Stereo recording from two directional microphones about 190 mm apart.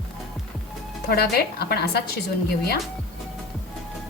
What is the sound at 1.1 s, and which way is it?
Speech, 55° left (ahead or behind).